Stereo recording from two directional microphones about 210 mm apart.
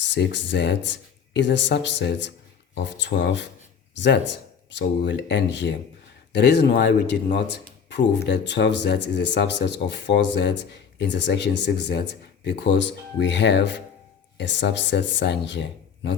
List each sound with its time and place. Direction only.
0.0 s speech: 60° left (ahead or behind)